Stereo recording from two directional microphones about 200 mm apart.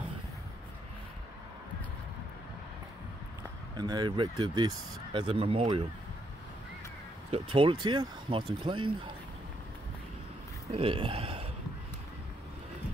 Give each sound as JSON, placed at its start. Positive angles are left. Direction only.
{"t": 3.7, "sound": "speech", "side_deg": -20}
{"t": 7.2, "sound": "speech", "side_deg": -30}
{"t": 10.7, "sound": "speech", "side_deg": -30}